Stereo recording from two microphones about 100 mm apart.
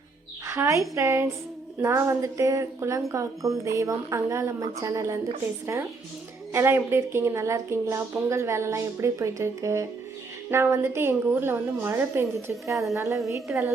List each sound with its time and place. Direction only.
0.4 s a woman's voice: 25° right (ahead or behind)